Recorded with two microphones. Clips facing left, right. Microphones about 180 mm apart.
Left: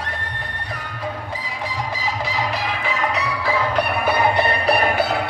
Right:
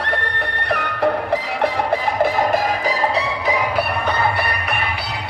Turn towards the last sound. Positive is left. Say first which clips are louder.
# left 7 dB
turn(degrees=45)  # may be behind; listen again after turning